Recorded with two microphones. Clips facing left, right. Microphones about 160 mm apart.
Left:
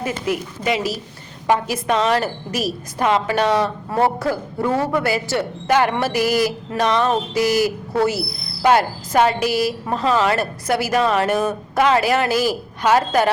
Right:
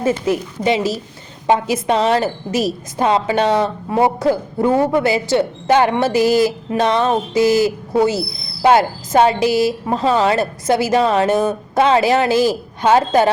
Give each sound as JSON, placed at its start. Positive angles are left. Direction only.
{"t": 0.0, "sound": "speech", "side_deg": -25}
{"t": 3.8, "sound": "speech", "side_deg": -15}